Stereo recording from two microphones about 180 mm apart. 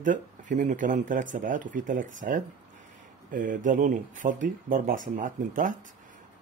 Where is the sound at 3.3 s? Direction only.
45° right (ahead or behind).